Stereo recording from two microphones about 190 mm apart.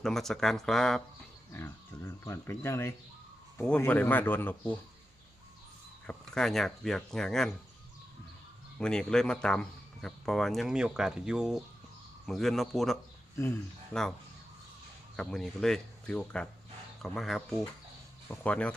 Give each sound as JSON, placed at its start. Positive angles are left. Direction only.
{"t": 0.0, "sound": "speech", "side_deg": 0}
{"t": 6.1, "sound": "speech", "side_deg": 5}
{"t": 8.8, "sound": "speech", "side_deg": 5}
{"t": 15.1, "sound": "speech", "side_deg": 5}